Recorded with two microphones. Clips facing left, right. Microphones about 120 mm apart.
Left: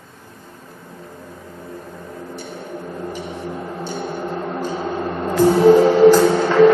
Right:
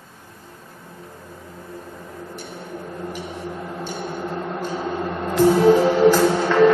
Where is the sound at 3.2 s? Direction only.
5° right (ahead or behind).